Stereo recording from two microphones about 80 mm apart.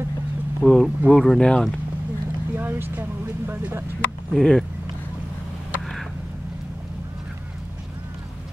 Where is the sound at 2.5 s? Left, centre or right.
Right.